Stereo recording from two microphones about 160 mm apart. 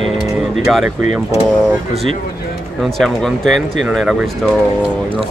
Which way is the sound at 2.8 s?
Centre (ahead or behind).